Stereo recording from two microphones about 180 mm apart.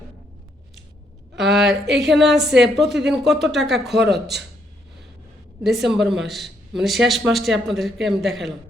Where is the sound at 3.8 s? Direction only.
70° right (ahead or behind).